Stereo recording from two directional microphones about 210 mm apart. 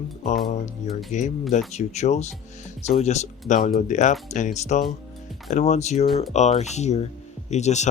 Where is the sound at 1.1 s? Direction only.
35° left (ahead or behind).